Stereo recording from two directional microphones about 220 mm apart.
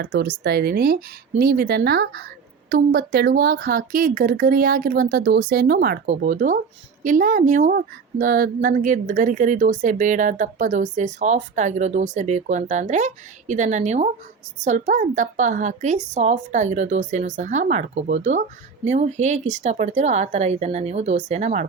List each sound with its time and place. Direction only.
0.0 s speech: 45° right (ahead or behind)